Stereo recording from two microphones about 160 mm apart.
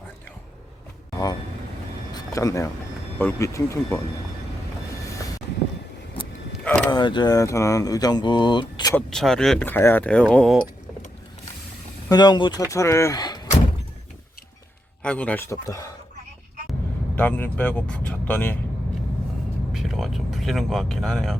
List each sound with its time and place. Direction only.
2.1 s a sound: 20° left (ahead or behind)
3.2 s speech: 15° left (ahead or behind)
6.7 s vehicle: 5° left (ahead or behind)
6.9 s speech: 30° left (ahead or behind)
9.0 s speech: 5° left (ahead or behind)
12.0 s speech: 25° left (ahead or behind)
15.0 s speech: 10° left (ahead or behind)
17.2 s speech: 10° left (ahead or behind)
19.7 s speech: centre (ahead or behind)